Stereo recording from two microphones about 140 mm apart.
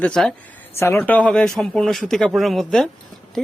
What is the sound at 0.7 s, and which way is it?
Speech, 15° left (ahead or behind).